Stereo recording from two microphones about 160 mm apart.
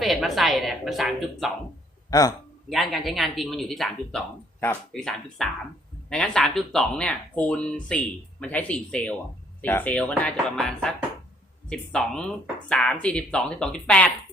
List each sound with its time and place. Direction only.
0.0 s speech: centre (ahead or behind)
2.0 s a man's voice: 25° left (ahead or behind)
2.6 s speech: centre (ahead or behind)